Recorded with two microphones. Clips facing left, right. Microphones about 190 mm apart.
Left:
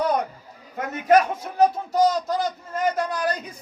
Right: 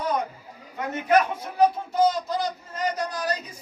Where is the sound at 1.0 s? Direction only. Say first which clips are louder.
Left 3 dB; 40° left (ahead or behind).